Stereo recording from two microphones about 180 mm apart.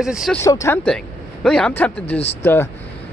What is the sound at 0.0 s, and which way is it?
Speech, centre (ahead or behind).